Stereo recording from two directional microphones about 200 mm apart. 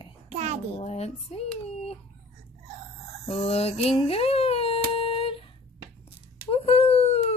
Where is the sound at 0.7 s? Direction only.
30° left (ahead or behind).